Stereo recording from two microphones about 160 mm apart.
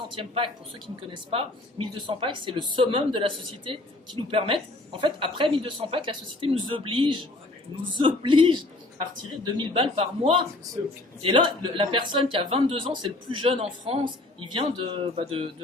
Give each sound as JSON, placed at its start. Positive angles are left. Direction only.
{"t": 0.2, "sound": "a woman's voice", "side_deg": -30}
{"t": 10.8, "sound": "speech", "side_deg": -20}
{"t": 11.2, "sound": "a woman's voice", "side_deg": -35}